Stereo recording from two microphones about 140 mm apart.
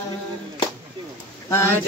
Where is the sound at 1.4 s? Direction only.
20° left (ahead or behind).